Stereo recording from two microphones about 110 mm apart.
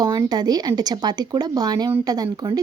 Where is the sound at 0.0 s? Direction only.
35° right (ahead or behind).